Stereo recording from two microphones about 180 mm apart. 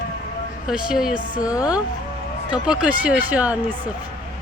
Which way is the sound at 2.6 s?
5° right (ahead or behind).